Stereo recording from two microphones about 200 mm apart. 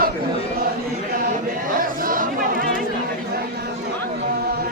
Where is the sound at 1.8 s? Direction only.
45° right (ahead or behind).